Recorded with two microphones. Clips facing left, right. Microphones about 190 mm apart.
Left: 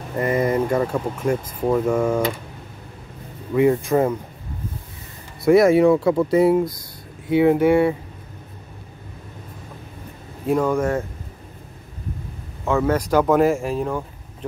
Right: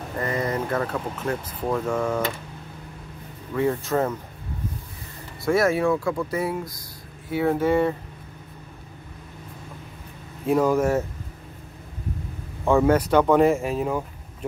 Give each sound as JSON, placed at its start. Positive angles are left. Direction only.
{"t": 0.2, "sound": "speech", "side_deg": 20}
{"t": 3.5, "sound": "speech", "side_deg": 15}
{"t": 5.5, "sound": "speech", "side_deg": 20}
{"t": 10.4, "sound": "speech", "side_deg": -5}
{"t": 12.6, "sound": "speech", "side_deg": -15}
{"t": 13.1, "sound": "speech", "side_deg": 0}